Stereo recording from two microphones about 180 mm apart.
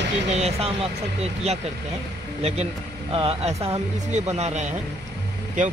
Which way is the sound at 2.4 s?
35° right (ahead or behind).